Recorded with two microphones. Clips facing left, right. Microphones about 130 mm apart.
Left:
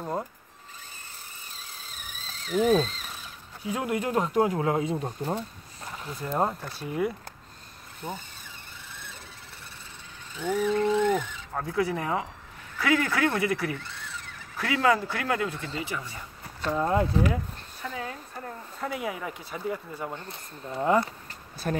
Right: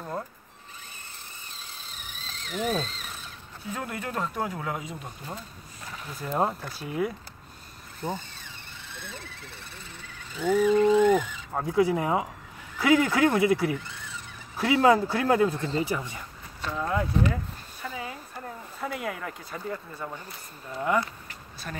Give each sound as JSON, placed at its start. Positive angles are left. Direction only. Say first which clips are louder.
{"t": 0.0, "sound": "mechanisms", "louder": "left 3 dB", "side_deg": 20}
{"t": 2.2, "sound": "frog", "louder": "left 7 dB", "side_deg": 0}
{"t": 3.6, "sound": "speech", "louder": "left 6 dB", "side_deg": 15}
{"t": 6.0, "sound": "speech", "louder": "even", "side_deg": 0}
{"t": 10.6, "sound": "speech", "louder": "right 4 dB", "side_deg": -10}
{"t": 16.7, "sound": "speech", "louder": "left 4 dB", "side_deg": 30}
{"t": 17.8, "sound": "a sound", "louder": "left 1 dB", "side_deg": -5}
{"t": 20.8, "sound": "speech", "louder": "left 3 dB", "side_deg": 30}
{"t": 21.7, "sound": "speech", "louder": "left 9 dB", "side_deg": 45}